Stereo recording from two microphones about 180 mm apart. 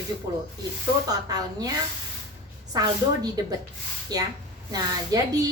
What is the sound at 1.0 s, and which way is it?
Speech, 20° right (ahead or behind).